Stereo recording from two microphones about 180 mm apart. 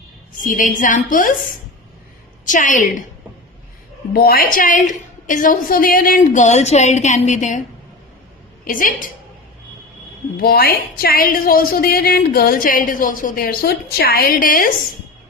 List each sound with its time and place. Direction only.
0.4 s a woman's voice: 45° left (ahead or behind)
2.5 s a woman's voice: 45° left (ahead or behind)
4.1 s a woman's voice: 55° left (ahead or behind)
8.6 s a woman's voice: 50° left (ahead or behind)
10.4 s a woman's voice: 55° left (ahead or behind)